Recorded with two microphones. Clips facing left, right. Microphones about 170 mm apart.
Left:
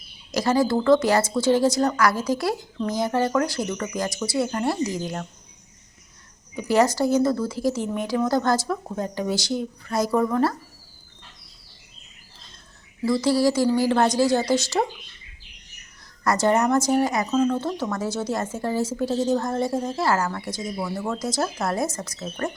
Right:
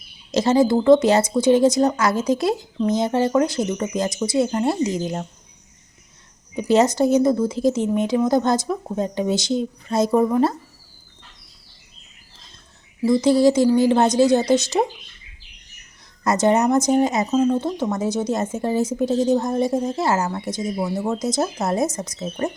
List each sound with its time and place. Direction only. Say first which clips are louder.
0.3 s a woman's voice: right 4 dB; 25° right (ahead or behind)
6.6 s a woman's voice: right 3 dB; 20° right (ahead or behind)
13.0 s a woman's voice: right 5 dB; 20° right (ahead or behind)
16.2 s a woman's voice: right 3 dB; 20° right (ahead or behind)